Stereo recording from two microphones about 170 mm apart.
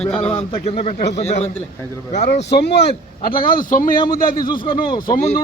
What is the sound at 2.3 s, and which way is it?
Speech, 75° left (ahead or behind).